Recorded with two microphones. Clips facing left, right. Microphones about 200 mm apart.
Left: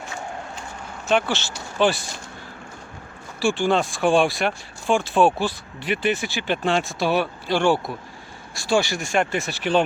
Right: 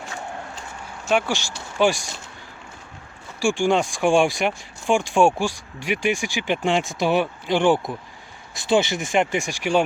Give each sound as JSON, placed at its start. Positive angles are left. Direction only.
{"t": 1.0, "sound": "speech", "side_deg": -10}
{"t": 3.4, "sound": "speech", "side_deg": -15}